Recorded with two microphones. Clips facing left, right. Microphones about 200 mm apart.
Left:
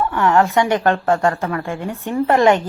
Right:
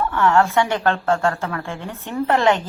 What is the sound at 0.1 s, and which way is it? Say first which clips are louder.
Speech: even; 15° left (ahead or behind).